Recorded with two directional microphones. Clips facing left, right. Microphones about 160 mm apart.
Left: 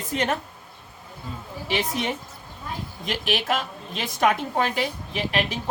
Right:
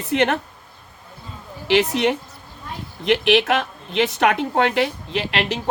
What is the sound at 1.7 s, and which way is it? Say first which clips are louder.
A woman's voice: right 9 dB; 75° right (ahead or behind).